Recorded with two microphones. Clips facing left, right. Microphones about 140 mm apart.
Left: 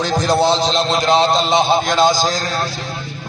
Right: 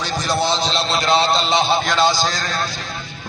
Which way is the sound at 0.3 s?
45° left (ahead or behind).